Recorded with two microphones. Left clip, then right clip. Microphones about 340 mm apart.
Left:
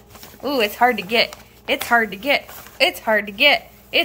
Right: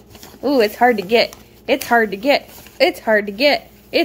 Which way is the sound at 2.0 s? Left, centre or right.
Left.